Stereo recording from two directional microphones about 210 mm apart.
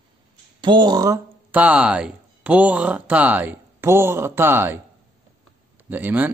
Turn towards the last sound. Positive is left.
turn(degrees=-10)  # may be behind; listen again after turning